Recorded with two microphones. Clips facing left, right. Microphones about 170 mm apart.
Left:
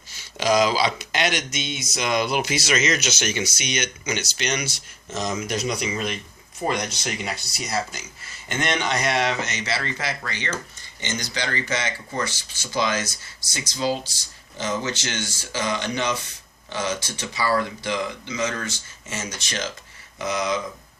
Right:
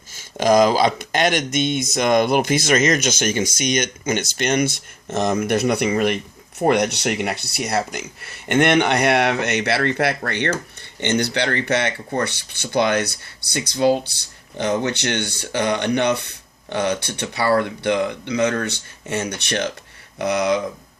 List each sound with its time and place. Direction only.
0.1 s speech: 50° right (ahead or behind)